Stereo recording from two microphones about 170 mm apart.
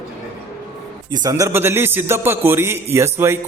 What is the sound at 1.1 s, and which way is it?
A man's voice, 20° right (ahead or behind).